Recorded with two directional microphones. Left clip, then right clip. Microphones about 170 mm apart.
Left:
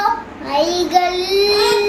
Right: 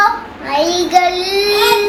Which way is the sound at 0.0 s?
Centre (ahead or behind).